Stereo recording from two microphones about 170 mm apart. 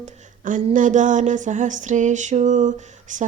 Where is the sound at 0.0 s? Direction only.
50° right (ahead or behind).